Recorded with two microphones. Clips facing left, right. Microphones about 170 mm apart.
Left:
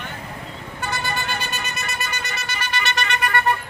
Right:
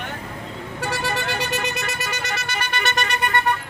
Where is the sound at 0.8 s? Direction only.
90° right; by 3.1 s 50° right (ahead or behind).